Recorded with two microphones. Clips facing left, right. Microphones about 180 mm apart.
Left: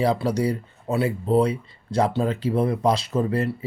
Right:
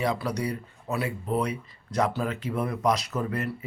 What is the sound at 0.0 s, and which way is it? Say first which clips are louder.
Speech: left 6 dB; 30° left (ahead or behind).